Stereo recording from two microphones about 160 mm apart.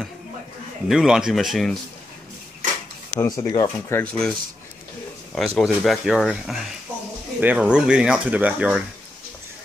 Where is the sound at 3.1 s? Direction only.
20° left (ahead or behind).